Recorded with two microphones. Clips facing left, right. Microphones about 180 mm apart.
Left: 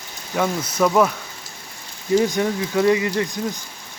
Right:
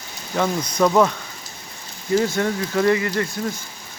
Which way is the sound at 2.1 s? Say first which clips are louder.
Left 1 dB; 15° left (ahead or behind).